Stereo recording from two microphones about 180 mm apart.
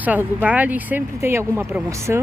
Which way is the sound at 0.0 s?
10° right (ahead or behind).